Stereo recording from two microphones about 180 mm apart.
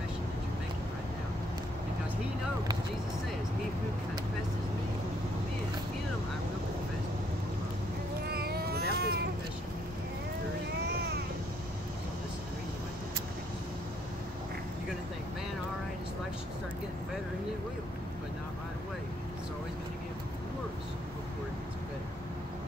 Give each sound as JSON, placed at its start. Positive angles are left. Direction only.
{"t": 8.3, "sound": "cat", "side_deg": -60}